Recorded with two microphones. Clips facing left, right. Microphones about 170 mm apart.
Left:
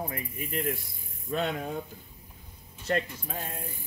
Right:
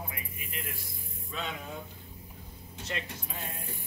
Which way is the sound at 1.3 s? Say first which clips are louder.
Left 9 dB; 55° left (ahead or behind).